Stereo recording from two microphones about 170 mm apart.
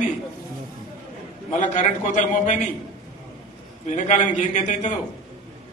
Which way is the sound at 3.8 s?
45° left (ahead or behind).